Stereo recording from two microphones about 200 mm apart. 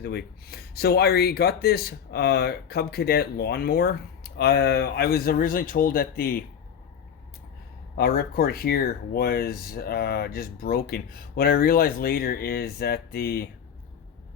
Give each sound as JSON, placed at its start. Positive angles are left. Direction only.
{"t": 0.0, "sound": "speech", "side_deg": 50}
{"t": 7.9, "sound": "speech", "side_deg": 50}